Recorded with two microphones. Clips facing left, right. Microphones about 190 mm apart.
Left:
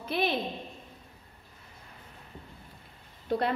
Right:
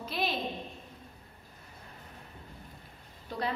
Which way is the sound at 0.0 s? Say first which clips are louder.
Left 4 dB; 60° left (ahead or behind).